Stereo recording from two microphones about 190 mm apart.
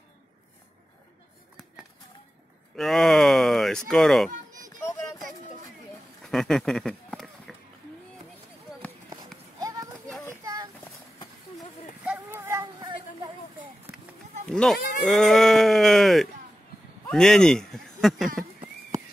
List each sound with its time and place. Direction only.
2.7 s speech: centre (ahead or behind)
6.2 s run: centre (ahead or behind)
9.6 s children playing: 20° right (ahead or behind)
10.4 s a sound: 20° right (ahead or behind)
12.0 s a sound: 5° right (ahead or behind); by 13.7 s 25° right (ahead or behind)
14.5 s speech: centre (ahead or behind)